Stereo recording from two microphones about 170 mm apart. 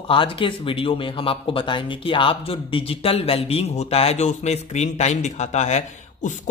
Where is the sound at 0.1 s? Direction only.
30° left (ahead or behind).